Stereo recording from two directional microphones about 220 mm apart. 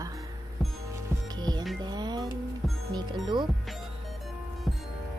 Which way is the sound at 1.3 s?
20° right (ahead or behind).